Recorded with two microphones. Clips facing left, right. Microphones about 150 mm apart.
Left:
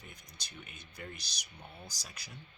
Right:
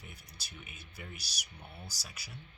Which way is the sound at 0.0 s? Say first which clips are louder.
Even; 5° right (ahead or behind).